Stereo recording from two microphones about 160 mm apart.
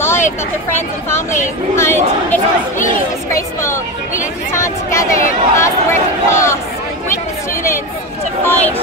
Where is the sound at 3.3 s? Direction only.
20° left (ahead or behind).